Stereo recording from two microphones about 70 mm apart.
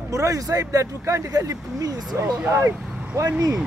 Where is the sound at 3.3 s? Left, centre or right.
Right.